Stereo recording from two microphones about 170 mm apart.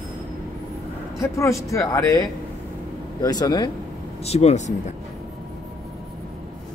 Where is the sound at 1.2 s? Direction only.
15° left (ahead or behind).